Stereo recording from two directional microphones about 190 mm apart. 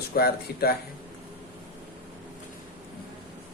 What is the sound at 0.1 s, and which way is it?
Speech, 55° left (ahead or behind).